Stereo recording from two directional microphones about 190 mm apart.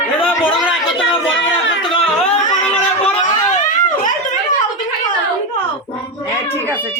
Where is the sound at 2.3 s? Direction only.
5° left (ahead or behind).